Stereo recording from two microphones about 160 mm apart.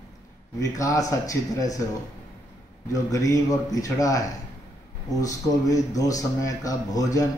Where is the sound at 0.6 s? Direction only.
20° left (ahead or behind).